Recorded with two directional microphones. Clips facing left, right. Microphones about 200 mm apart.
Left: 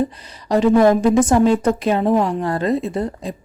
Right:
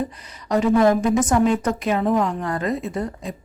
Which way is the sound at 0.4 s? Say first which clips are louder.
Left 3 dB; 30° left (ahead or behind).